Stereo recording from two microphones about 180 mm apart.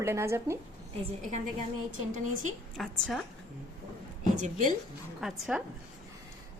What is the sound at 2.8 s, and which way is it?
Speech, centre (ahead or behind).